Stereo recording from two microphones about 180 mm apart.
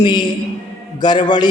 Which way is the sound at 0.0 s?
25° left (ahead or behind).